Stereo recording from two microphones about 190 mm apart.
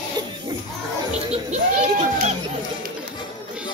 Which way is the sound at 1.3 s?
40° right (ahead or behind).